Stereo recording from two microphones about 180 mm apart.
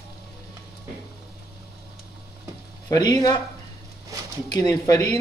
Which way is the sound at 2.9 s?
20° left (ahead or behind).